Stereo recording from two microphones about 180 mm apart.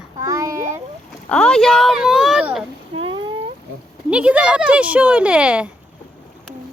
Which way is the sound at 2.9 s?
30° right (ahead or behind).